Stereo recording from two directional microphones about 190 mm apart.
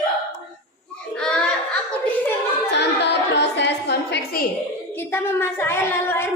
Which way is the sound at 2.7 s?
65° left (ahead or behind).